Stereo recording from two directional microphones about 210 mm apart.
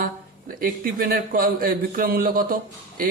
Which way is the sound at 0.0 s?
45° right (ahead or behind).